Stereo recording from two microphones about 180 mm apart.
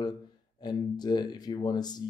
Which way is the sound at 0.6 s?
25° left (ahead or behind).